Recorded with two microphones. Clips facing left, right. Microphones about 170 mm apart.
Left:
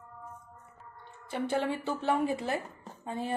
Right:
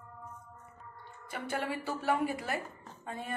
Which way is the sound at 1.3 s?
25° left (ahead or behind).